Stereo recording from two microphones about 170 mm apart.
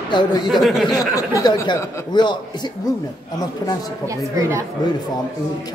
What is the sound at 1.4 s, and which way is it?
Speech, 25° left (ahead or behind).